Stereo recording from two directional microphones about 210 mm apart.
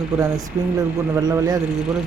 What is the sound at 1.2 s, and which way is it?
Speech, 20° right (ahead or behind).